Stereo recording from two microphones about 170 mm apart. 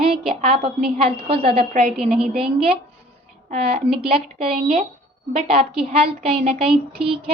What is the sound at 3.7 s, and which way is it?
A woman's voice, 35° right (ahead or behind).